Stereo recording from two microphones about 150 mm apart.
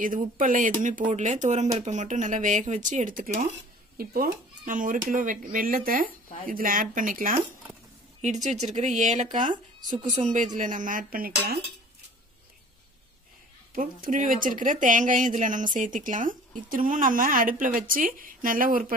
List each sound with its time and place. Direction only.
0.0 s speech: 65° right (ahead or behind)
4.0 s speech: 80° right
8.2 s speech: 50° right (ahead or behind); by 11.3 s 70° right (ahead or behind)
13.7 s speech: 65° right (ahead or behind)